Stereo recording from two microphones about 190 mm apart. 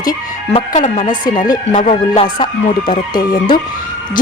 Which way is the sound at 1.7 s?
30° left (ahead or behind).